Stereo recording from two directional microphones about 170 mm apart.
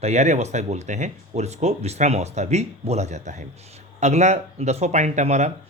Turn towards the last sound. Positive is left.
turn(degrees=-45)  # may be behind; listen again after turning